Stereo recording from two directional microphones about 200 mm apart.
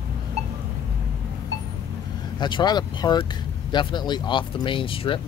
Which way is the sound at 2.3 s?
20° left (ahead or behind).